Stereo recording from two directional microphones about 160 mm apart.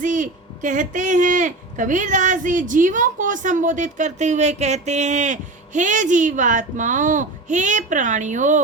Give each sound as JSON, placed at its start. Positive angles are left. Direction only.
{"t": 0.0, "sound": "speech", "side_deg": -55}